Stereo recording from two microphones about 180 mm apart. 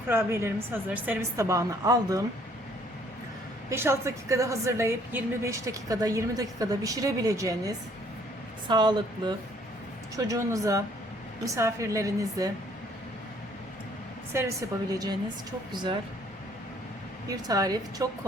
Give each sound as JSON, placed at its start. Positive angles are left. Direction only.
{"t": 0.1, "sound": "a woman's voice", "side_deg": -15}
{"t": 3.7, "sound": "a woman's voice", "side_deg": -15}
{"t": 14.3, "sound": "a woman's voice", "side_deg": -15}
{"t": 17.2, "sound": "a woman's voice", "side_deg": -20}